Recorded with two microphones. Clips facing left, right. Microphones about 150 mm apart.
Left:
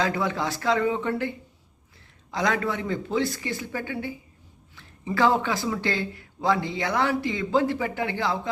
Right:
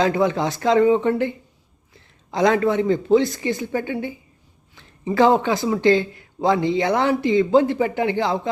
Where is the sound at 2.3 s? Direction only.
25° right (ahead or behind).